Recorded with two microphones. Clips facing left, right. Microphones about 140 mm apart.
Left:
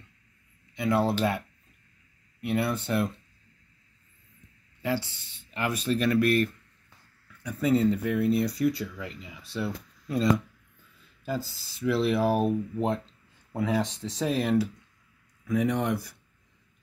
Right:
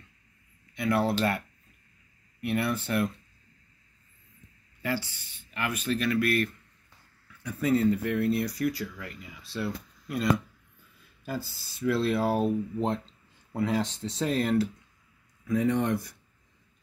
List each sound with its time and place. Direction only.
0.7 s speech: 20° left (ahead or behind)
2.4 s speech: 15° left (ahead or behind)
4.8 s speech: 20° left (ahead or behind)
7.4 s speech: 20° left (ahead or behind)
11.2 s speech: 20° left (ahead or behind)